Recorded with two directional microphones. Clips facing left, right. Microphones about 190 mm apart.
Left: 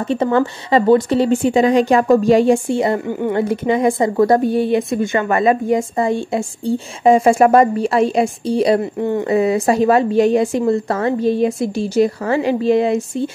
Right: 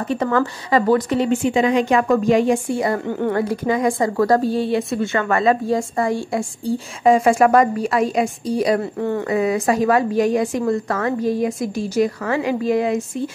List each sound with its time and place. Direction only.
0.1 s speech: 25° left (ahead or behind)
3.1 s speech: 10° left (ahead or behind)
3.3 s a woman's voice: 25° left (ahead or behind)